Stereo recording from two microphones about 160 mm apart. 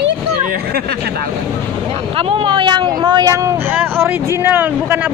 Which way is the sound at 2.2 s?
35° right (ahead or behind).